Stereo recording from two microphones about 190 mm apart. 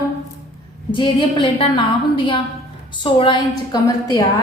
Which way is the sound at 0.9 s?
25° left (ahead or behind).